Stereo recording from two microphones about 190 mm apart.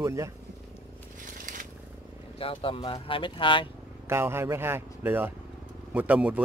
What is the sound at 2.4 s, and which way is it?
Speech, 30° left (ahead or behind).